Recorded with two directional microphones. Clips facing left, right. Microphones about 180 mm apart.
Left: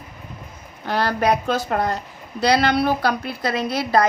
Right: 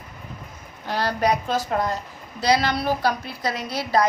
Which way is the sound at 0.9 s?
60° left (ahead or behind).